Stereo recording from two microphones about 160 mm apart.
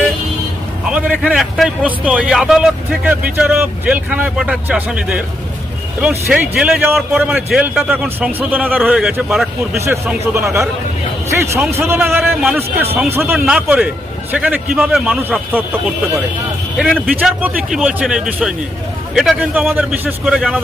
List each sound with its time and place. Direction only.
0.9 s a man's voice: 5° right (ahead or behind)
10.3 s a man's voice: 20° right (ahead or behind)
13.4 s a man's voice: 5° right (ahead or behind)
16.7 s a man's voice: centre (ahead or behind)